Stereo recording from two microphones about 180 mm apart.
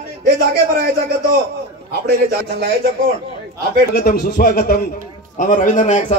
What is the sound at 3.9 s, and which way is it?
A man's voice, 55° left (ahead or behind).